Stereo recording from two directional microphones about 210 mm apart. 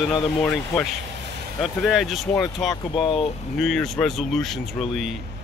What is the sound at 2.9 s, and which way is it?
Speech, 25° left (ahead or behind).